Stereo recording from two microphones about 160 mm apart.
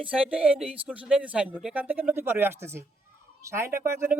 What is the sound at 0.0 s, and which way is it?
Speech, 5° right (ahead or behind).